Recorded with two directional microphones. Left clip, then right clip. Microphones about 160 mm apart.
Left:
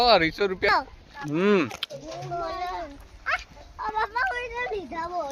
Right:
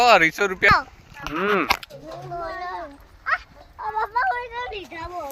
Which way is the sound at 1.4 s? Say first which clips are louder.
Right 2 dB; 90° left.